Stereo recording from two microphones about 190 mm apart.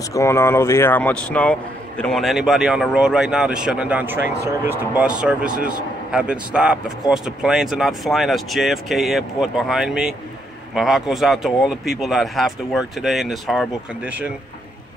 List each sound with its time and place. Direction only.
0.1 s speech: 15° left (ahead or behind); by 14.3 s 5° right (ahead or behind)